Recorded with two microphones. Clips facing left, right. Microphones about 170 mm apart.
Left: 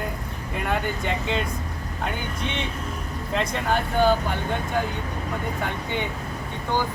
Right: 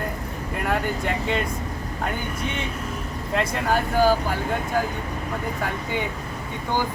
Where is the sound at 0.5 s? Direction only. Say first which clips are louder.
Right 1 dB; centre (ahead or behind).